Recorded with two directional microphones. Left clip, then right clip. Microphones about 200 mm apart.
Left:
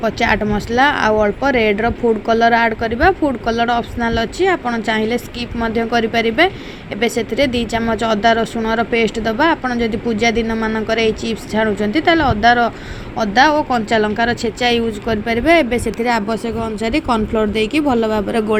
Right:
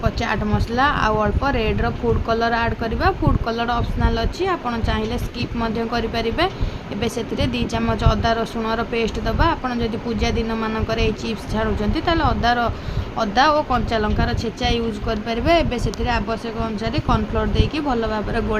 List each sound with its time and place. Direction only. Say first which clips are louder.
0.0 s speech: left 7 dB; 15° left (ahead or behind)